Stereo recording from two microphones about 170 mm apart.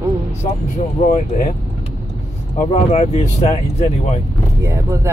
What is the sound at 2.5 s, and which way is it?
Speech, 40° left (ahead or behind).